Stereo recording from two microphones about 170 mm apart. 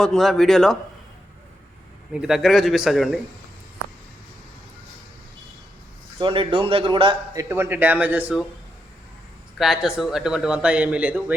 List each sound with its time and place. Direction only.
0.0 s speech: centre (ahead or behind)
2.1 s speech: 5° right (ahead or behind)
6.1 s a man's voice: 30° right (ahead or behind)
7.4 s speech: 15° right (ahead or behind)
9.6 s speech: 5° right (ahead or behind)